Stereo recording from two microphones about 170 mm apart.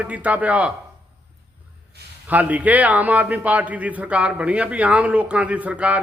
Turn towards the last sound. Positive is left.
turn(degrees=-5)  # may be behind; listen again after turning